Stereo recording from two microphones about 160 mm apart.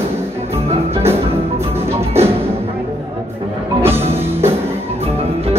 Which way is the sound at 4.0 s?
40° right (ahead or behind).